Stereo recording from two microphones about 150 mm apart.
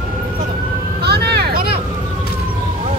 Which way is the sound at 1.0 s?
90° right.